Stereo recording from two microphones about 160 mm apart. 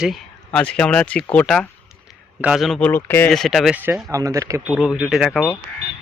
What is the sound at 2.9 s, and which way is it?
Speech, 15° left (ahead or behind).